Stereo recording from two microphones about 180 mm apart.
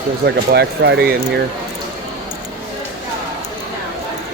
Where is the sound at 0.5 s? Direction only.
65° right (ahead or behind).